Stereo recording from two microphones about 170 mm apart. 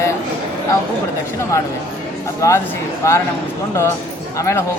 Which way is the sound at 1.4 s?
15° left (ahead or behind).